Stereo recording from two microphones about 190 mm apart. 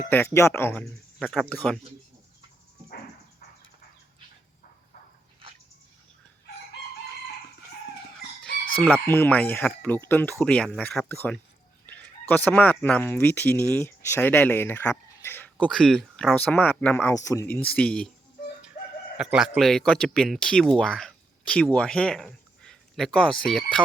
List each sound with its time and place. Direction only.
0.1 s speech: 10° left (ahead or behind)
8.8 s speech: 10° left (ahead or behind)
15.7 s speech: centre (ahead or behind)
19.1 s speech: 5° right (ahead or behind)